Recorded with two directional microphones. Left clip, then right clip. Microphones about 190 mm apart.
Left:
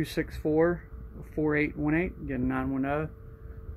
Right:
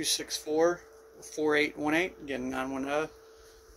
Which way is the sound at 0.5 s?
15° right (ahead or behind).